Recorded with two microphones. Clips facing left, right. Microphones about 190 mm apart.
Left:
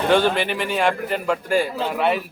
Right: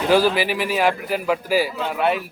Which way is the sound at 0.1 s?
5° right (ahead or behind).